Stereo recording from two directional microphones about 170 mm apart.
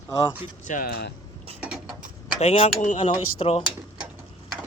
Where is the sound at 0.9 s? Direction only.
75° left (ahead or behind).